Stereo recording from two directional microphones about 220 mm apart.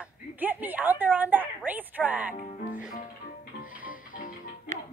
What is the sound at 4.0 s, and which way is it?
Music, 40° left (ahead or behind).